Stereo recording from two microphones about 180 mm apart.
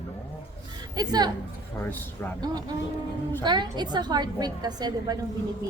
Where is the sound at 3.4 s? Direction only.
25° right (ahead or behind).